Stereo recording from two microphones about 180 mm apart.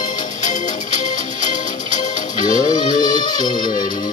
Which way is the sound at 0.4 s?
45° left (ahead or behind).